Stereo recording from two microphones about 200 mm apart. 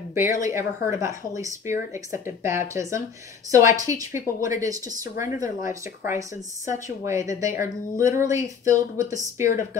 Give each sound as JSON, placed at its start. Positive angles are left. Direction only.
{"t": 0.1, "sound": "speech", "side_deg": -10}